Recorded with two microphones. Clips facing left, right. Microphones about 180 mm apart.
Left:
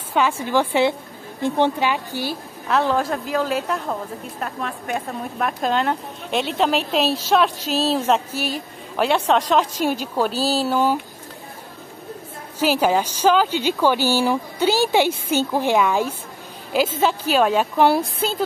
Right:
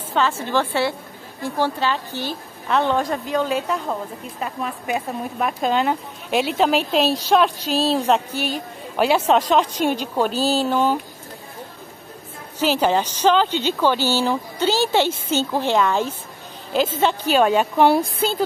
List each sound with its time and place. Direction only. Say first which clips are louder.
0.1 s speech: left 1 dB; 15° left (ahead or behind)
12.5 s speech: even; 10° left (ahead or behind)